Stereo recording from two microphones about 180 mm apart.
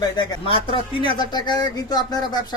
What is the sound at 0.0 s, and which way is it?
Speech, 25° left (ahead or behind).